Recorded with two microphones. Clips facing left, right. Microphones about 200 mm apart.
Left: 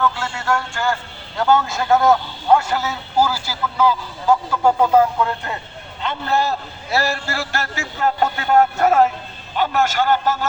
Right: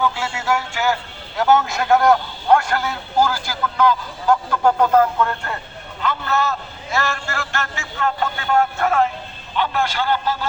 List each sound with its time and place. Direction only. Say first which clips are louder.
0.0 s a man's voice: even; 10° right (ahead or behind); by 5.5 s 15° left (ahead or behind)
6.0 s a man's voice: left 1 dB; 30° left (ahead or behind); by 10.4 s 45° left (ahead or behind)